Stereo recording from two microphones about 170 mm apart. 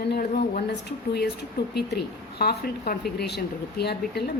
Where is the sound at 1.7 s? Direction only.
70° left (ahead or behind).